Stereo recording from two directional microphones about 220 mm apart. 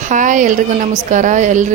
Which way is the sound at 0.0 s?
35° right (ahead or behind).